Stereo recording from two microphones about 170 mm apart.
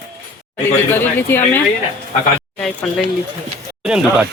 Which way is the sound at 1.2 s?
15° left (ahead or behind).